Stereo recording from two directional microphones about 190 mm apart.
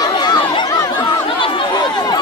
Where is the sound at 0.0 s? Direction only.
20° left (ahead or behind).